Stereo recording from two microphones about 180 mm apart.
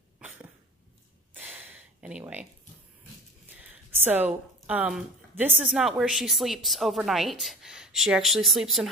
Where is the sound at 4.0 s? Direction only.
10° right (ahead or behind).